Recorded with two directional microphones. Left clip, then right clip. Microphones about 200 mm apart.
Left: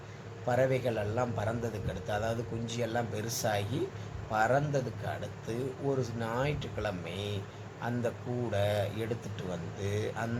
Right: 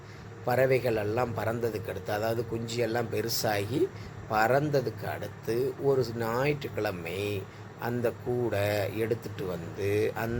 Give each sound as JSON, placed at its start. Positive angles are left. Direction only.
{"t": 0.4, "sound": "a man's voice", "side_deg": -20}